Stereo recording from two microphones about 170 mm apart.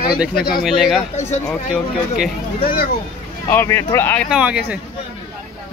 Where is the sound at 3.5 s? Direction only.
15° left (ahead or behind).